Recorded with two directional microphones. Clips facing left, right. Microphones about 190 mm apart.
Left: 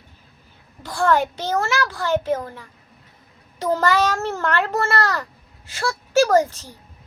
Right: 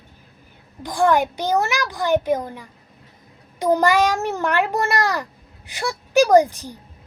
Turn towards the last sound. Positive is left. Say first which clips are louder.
# right 3 dB
turn(degrees=-15)  # may be behind; listen again after turning